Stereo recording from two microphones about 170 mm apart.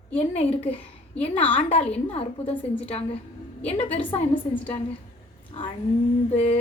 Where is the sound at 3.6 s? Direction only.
35° left (ahead or behind).